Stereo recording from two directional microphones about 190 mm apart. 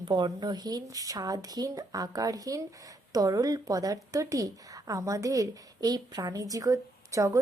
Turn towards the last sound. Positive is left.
turn(degrees=-15)  # may be behind; listen again after turning